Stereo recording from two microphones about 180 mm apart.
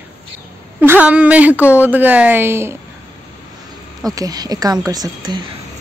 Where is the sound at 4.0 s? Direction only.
20° right (ahead or behind).